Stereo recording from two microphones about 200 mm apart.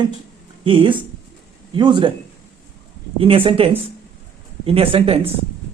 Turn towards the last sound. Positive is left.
turn(degrees=-30)  # may be behind; listen again after turning